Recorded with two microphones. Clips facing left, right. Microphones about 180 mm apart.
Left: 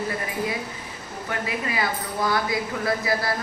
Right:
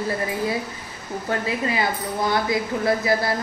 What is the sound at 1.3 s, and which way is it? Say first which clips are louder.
A woman's voice: right 4 dB; 30° right (ahead or behind).